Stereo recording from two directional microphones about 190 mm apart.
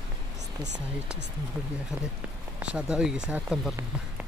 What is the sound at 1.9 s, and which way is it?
Speech, 5° right (ahead or behind).